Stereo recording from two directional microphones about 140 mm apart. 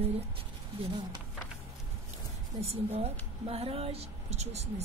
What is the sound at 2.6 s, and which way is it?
A woman's voice, 45° right (ahead or behind).